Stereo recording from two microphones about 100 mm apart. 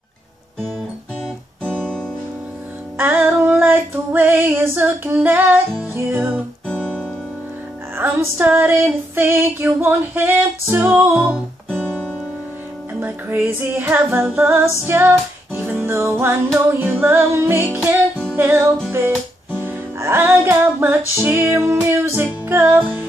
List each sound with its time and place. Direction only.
1.6 s music: 10° left (ahead or behind)
3.0 s female singing: 20° right (ahead or behind)
6.7 s music: 10° left (ahead or behind)
8.0 s female singing: 20° right (ahead or behind)
11.2 s music: 10° left (ahead or behind)
13.0 s female singing: 20° right (ahead or behind)
18.9 s music: 25° right (ahead or behind)
21.2 s female singing: 25° right (ahead or behind)